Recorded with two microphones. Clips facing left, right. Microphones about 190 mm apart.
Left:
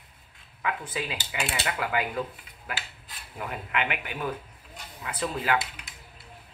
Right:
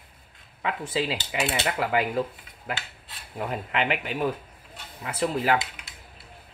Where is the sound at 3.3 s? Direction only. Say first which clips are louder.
Right 3 dB; 30° right (ahead or behind).